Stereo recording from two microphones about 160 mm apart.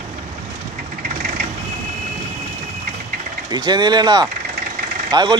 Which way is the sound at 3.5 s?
25° right (ahead or behind).